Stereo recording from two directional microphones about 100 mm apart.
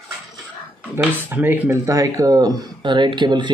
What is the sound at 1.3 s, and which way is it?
Speech, 20° right (ahead or behind).